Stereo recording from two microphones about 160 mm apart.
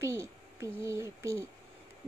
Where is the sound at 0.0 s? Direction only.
20° right (ahead or behind).